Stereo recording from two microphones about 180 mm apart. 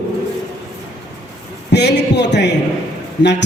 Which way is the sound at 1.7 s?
70° left (ahead or behind).